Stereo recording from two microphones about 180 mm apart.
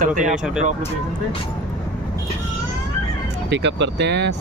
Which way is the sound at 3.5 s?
75° right (ahead or behind).